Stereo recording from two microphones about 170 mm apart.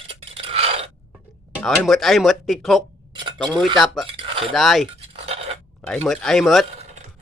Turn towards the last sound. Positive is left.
turn(degrees=0)  # may be behind; listen again after turning